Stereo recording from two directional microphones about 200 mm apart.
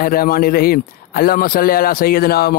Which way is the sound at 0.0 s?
45° left (ahead or behind).